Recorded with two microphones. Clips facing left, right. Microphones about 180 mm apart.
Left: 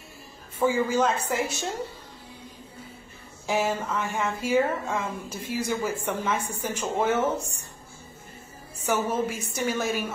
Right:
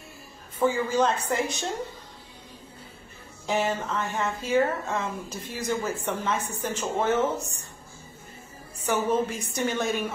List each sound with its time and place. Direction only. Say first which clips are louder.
0.6 s speech: even; 10° left (ahead or behind)
3.4 s speech: even; 10° left (ahead or behind)
8.8 s speech: right 1 dB; 10° left (ahead or behind)